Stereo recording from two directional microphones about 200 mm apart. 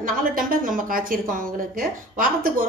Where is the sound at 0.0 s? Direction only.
45° right (ahead or behind).